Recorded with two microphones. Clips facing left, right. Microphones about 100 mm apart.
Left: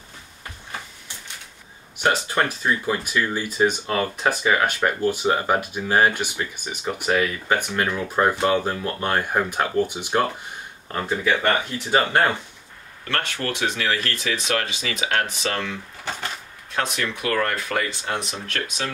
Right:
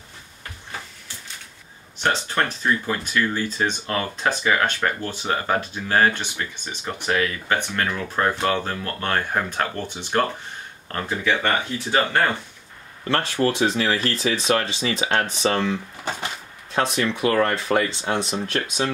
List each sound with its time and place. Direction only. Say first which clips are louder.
2.0 s speech: left 1 dB; 10° left (ahead or behind)
13.1 s speech: right 5 dB; 30° right (ahead or behind)